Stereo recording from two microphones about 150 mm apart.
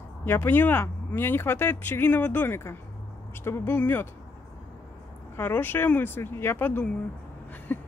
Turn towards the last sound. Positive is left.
turn(degrees=10)  # may be behind; listen again after turning